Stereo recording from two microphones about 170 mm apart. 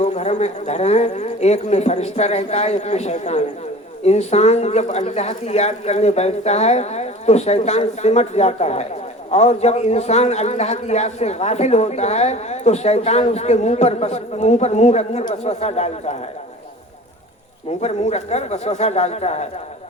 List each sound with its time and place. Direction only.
0.0 s a man's voice: 40° left (ahead or behind)
17.7 s a man's voice: 40° left (ahead or behind)